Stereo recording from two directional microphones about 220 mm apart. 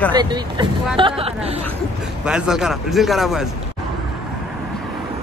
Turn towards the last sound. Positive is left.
turn(degrees=0)  # may be behind; listen again after turning